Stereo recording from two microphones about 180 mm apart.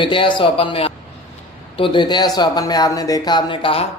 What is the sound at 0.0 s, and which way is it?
Speech, 25° left (ahead or behind).